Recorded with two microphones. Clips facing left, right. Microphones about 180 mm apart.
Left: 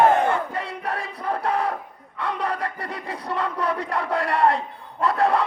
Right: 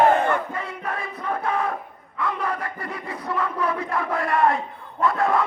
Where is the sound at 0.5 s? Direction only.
35° left (ahead or behind).